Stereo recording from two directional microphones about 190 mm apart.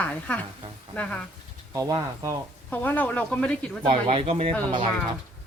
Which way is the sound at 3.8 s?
30° right (ahead or behind).